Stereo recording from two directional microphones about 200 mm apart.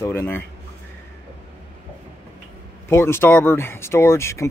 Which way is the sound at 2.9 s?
10° left (ahead or behind).